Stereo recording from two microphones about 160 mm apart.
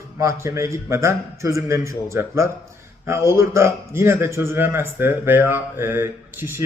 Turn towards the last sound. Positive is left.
turn(degrees=-15)  # may be behind; listen again after turning